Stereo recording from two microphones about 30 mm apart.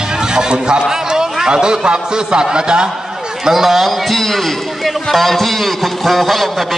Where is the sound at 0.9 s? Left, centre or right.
Right.